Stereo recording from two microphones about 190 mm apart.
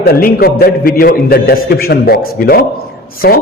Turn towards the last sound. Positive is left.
turn(degrees=55)  # may be behind; listen again after turning